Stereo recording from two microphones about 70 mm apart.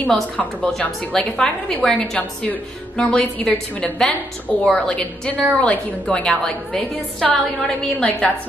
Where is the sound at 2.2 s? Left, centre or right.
Centre.